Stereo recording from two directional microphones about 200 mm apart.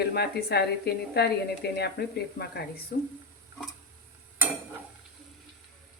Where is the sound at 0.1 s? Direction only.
55° left (ahead or behind).